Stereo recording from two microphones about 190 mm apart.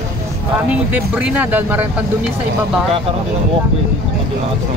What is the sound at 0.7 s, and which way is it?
Speech, 10° right (ahead or behind).